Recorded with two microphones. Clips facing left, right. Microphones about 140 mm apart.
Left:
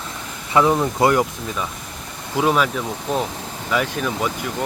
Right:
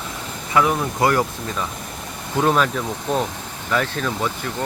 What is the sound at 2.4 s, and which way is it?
Speech, 5° left (ahead or behind).